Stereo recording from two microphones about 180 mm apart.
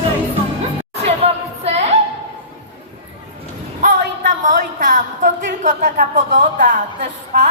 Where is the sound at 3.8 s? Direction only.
45° right (ahead or behind).